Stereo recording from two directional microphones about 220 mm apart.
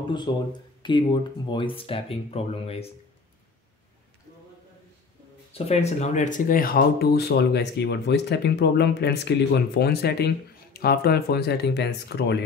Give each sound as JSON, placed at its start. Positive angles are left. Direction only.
{"t": 0.3, "sound": "speech", "side_deg": 20}
{"t": 5.5, "sound": "speech", "side_deg": 30}